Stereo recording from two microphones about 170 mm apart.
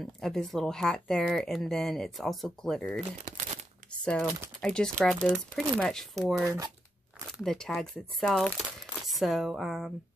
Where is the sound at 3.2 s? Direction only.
45° right (ahead or behind).